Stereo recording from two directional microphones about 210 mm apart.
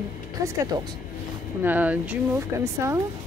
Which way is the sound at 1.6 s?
10° right (ahead or behind).